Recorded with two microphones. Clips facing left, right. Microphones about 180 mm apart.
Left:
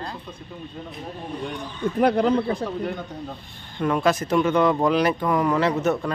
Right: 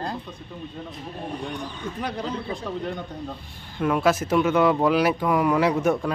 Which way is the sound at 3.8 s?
5° right (ahead or behind).